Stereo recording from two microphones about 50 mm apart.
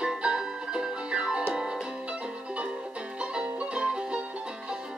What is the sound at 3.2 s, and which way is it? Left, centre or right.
Music, right.